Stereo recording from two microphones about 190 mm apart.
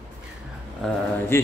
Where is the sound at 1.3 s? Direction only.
15° left (ahead or behind).